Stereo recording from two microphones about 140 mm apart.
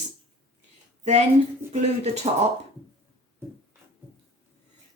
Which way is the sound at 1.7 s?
50° right (ahead or behind).